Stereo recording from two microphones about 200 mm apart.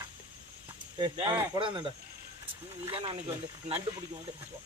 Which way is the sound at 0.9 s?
20° right (ahead or behind).